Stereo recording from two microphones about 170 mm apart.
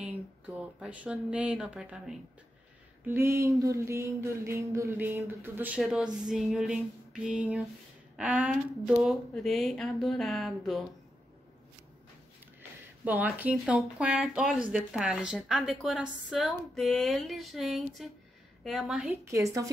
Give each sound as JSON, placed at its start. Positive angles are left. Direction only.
{"t": 0.7, "sound": "speech", "side_deg": -5}
{"t": 3.1, "sound": "speech", "side_deg": -15}
{"t": 5.8, "sound": "speech", "side_deg": 0}
{"t": 13.2, "sound": "speech", "side_deg": -10}
{"t": 19.3, "sound": "a woman's voice", "side_deg": -20}